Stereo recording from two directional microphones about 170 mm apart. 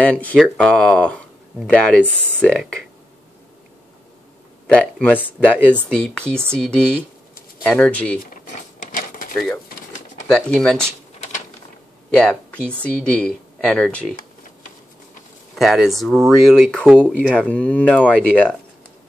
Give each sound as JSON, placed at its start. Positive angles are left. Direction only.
{"t": 0.0, "sound": "speech", "side_deg": 10}
{"t": 4.6, "sound": "speech", "side_deg": 5}
{"t": 8.2, "sound": "a sound", "side_deg": 50}
{"t": 10.2, "sound": "speech", "side_deg": 5}
{"t": 12.1, "sound": "speech", "side_deg": 5}
{"t": 15.5, "sound": "speech", "side_deg": 0}
{"t": 17.3, "sound": "speech", "side_deg": 5}